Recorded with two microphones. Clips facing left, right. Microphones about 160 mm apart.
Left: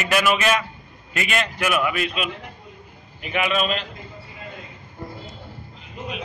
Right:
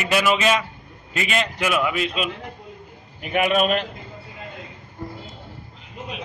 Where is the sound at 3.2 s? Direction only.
45° right (ahead or behind).